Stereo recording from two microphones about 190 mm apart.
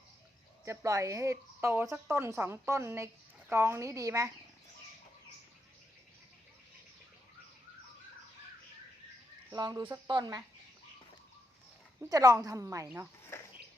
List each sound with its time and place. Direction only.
0.6 s a woman's voice: 15° right (ahead or behind)
9.5 s a woman's voice: 20° right (ahead or behind)
12.0 s a woman's voice: 20° right (ahead or behind)
13.3 s a sound: 10° left (ahead or behind)